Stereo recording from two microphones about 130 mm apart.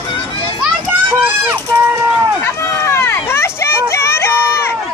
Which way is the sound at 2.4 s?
20° left (ahead or behind).